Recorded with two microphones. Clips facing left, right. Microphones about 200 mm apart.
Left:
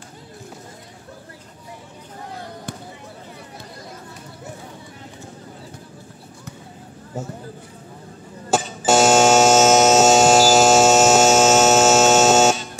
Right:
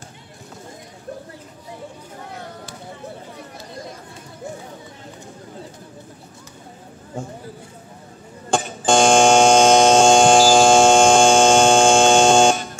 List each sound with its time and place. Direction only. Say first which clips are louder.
8.5 s buzzer: even; 5° left (ahead or behind)
8.8 s hum: right 1 dB; 5° left (ahead or behind)